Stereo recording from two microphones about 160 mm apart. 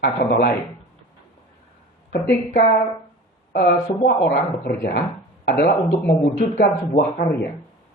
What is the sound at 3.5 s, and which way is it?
Speech, 75° left (ahead or behind).